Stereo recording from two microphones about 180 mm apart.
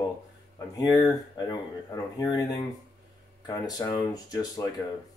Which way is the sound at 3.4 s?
20° left (ahead or behind).